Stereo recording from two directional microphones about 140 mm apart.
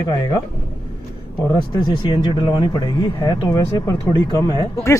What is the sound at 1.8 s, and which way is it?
Speech, 35° left (ahead or behind).